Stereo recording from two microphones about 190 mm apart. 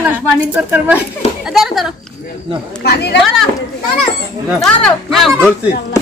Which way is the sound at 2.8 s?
60° left (ahead or behind).